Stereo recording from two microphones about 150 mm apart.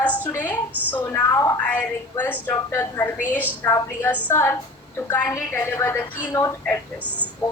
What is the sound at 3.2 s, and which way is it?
Speech, 10° right (ahead or behind).